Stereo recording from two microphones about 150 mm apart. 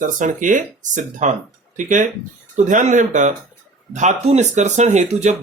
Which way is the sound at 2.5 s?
55° right (ahead or behind).